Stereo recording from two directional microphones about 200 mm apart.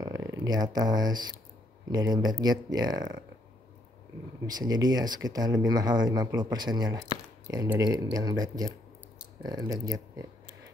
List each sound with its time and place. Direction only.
0.0 s speech: 15° right (ahead or behind)
4.5 s speech: 20° right (ahead or behind)